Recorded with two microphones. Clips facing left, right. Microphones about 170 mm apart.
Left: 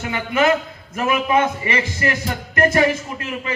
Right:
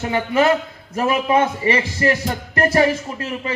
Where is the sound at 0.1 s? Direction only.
35° right (ahead or behind).